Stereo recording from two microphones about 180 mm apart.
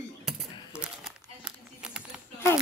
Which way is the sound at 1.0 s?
5° right (ahead or behind).